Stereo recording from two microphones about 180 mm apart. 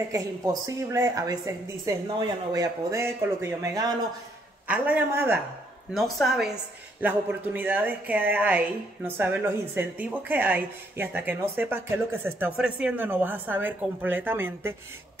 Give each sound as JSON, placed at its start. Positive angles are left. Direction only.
{"t": 0.1, "sound": "a woman's voice", "side_deg": -20}
{"t": 5.9, "sound": "a woman's voice", "side_deg": 0}